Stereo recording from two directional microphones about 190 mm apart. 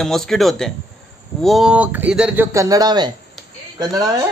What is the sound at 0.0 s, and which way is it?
Speech, centre (ahead or behind).